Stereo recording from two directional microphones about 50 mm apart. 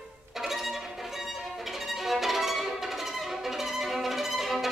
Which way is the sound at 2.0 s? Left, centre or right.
Centre.